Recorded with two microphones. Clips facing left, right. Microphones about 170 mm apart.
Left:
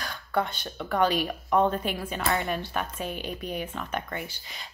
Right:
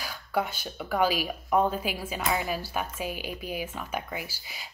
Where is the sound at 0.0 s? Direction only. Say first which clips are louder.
Left 1 dB; 5° right (ahead or behind).